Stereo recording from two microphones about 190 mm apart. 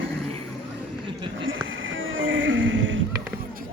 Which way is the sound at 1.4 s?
90° right.